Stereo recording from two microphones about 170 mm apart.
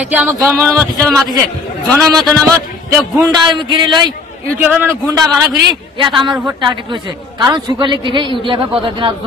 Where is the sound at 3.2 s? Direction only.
25° right (ahead or behind).